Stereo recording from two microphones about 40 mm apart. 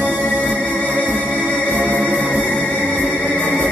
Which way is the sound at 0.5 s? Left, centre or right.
Left.